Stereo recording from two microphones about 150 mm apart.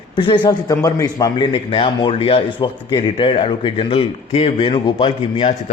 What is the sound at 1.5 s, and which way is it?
A man's voice, 40° left (ahead or behind).